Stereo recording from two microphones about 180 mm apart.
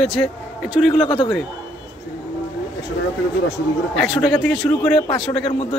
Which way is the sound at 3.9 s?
Centre (ahead or behind).